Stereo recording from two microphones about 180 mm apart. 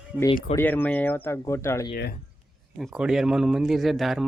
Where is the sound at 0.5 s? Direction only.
10° left (ahead or behind).